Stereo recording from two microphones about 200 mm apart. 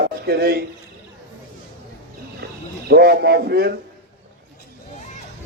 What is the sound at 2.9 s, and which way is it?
Speech, 50° right (ahead or behind).